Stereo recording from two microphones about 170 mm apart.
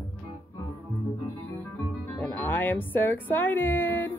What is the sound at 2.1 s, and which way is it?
Speech, 10° left (ahead or behind).